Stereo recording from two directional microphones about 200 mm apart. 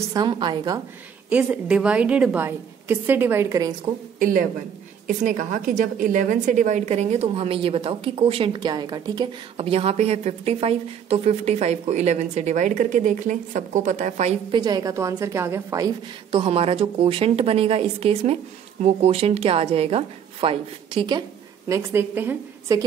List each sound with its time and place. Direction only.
0.1 s a woman's voice: 20° right (ahead or behind)
1.3 s a woman's voice: 5° right (ahead or behind)
4.2 s a woman's voice: 45° right (ahead or behind)
14.6 s a woman's voice: 20° right (ahead or behind)
21.6 s a woman's voice: 15° right (ahead or behind)